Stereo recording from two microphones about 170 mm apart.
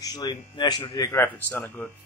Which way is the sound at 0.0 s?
25° left (ahead or behind).